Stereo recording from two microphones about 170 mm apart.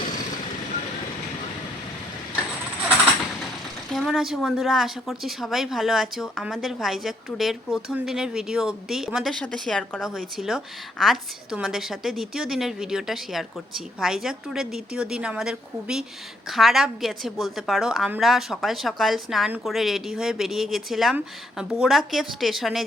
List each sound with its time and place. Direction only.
0.0 s vehicle: 50° left (ahead or behind)
3.9 s a woman's voice: centre (ahead or behind)